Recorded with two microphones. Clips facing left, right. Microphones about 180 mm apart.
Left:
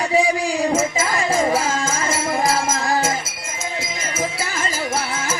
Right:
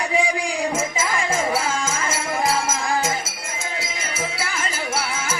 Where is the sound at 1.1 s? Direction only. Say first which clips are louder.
Left 4 dB; 40° left (ahead or behind).